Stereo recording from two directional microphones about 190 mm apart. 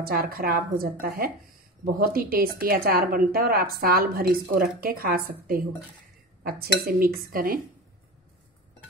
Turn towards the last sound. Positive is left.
turn(degrees=-50)  # may be behind; listen again after turning